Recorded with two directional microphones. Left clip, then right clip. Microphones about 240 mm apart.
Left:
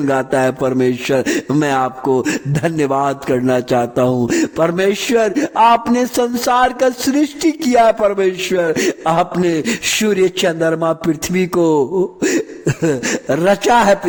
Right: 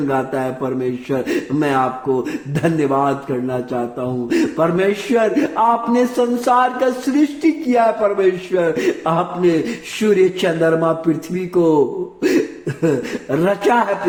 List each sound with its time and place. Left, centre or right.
0.1 s a man's voice: left